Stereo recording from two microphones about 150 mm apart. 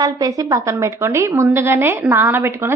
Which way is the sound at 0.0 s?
25° right (ahead or behind).